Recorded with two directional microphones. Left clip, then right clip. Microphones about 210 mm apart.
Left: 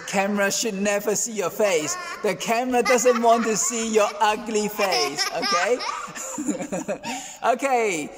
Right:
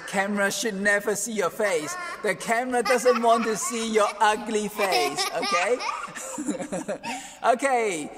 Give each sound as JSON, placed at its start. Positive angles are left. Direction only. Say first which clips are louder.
{"t": 0.1, "sound": "a man's voice", "louder": "left 3 dB", "side_deg": 0}
{"t": 4.7, "sound": "speech", "louder": "even", "side_deg": -20}
{"t": 6.4, "sound": "a man's voice", "louder": "left 3 dB", "side_deg": 0}